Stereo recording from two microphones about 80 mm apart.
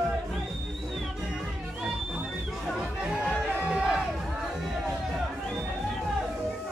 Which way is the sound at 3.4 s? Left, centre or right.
Centre.